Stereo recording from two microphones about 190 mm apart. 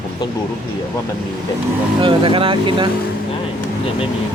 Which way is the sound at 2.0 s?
25° right (ahead or behind).